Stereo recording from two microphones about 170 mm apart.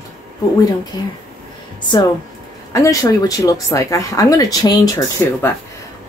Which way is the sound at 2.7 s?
20° left (ahead or behind).